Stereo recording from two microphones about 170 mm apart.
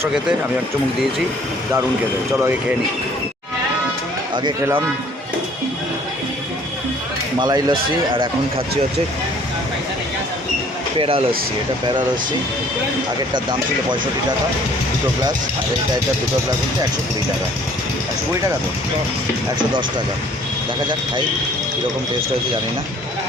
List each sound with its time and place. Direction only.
7.3 s speech: 25° right (ahead or behind)
10.9 s speech: 35° right (ahead or behind)
13.3 s speech: 25° right (ahead or behind)